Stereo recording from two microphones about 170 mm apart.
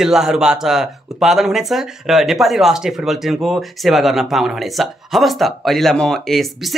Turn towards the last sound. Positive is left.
turn(degrees=0)  # may be behind; listen again after turning